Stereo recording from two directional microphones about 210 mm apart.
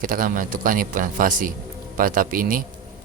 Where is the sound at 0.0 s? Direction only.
40° right (ahead or behind).